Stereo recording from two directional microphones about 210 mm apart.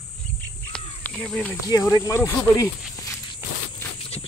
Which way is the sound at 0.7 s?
5° left (ahead or behind).